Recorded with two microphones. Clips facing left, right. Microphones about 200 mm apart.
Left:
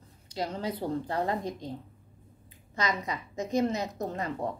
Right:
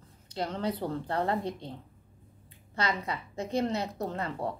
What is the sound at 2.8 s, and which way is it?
A woman's voice, 15° left (ahead or behind).